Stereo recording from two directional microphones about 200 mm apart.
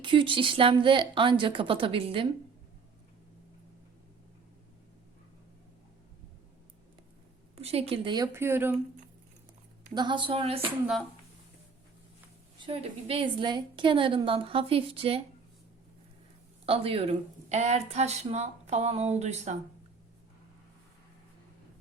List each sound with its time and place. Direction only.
0.0 s a woman's voice: 25° right (ahead or behind)
7.5 s a woman's voice: 30° right (ahead or behind); by 8.7 s 10° right (ahead or behind)
9.9 s a woman's voice: 20° right (ahead or behind)
12.5 s a woman's voice: 25° right (ahead or behind)
16.6 s speech: 30° right (ahead or behind)